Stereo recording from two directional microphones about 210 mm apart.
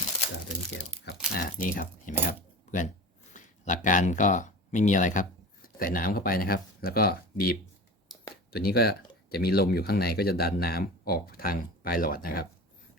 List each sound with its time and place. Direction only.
1.3 s speech: 45° left (ahead or behind)
3.3 s speech: 35° left (ahead or behind)